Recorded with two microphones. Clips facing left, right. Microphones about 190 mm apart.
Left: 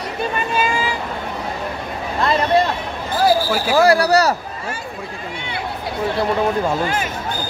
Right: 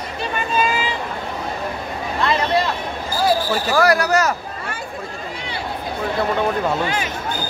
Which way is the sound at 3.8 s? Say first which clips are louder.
Left 3 dB; 30° left (ahead or behind).